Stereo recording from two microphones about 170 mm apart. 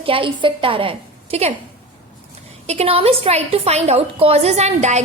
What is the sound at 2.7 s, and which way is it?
A woman's voice, 35° right (ahead or behind).